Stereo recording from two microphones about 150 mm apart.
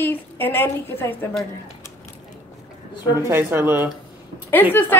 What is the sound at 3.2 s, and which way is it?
Speech, 15° right (ahead or behind).